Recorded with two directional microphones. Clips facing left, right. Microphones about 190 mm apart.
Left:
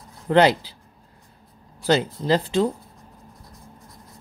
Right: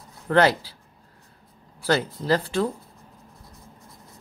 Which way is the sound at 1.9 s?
20° left (ahead or behind).